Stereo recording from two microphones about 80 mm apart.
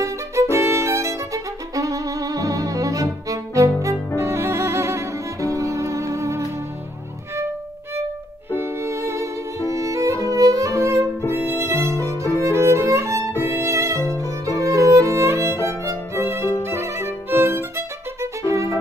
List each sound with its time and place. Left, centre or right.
0.0 s violin: right
4.2 s music: right
8.5 s music: right
11.1 s music: left
11.4 s music: right
11.9 s violin: left
12.4 s violin: right
13.6 s music: right
14.1 s violin: right